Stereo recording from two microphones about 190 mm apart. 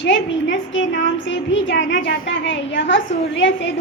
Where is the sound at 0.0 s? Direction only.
70° left (ahead or behind).